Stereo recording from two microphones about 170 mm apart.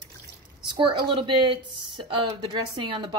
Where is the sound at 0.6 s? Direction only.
30° right (ahead or behind).